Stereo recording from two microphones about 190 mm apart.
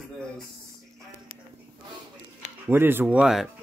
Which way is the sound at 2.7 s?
10° right (ahead or behind).